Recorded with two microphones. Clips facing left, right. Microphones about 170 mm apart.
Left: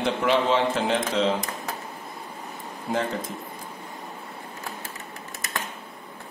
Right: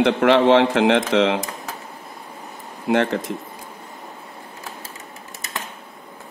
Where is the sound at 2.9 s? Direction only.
80° right.